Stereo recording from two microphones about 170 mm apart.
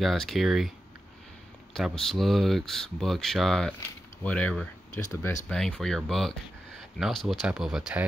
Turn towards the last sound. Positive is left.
turn(degrees=-5)  # may be behind; listen again after turning